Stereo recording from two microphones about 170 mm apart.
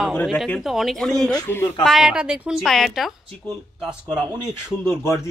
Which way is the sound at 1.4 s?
15° left (ahead or behind).